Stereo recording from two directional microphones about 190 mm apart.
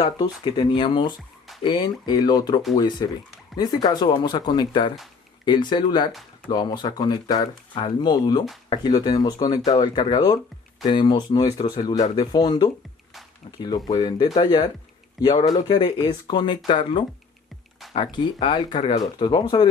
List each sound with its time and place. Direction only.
0.0 s speech: 20° left (ahead or behind)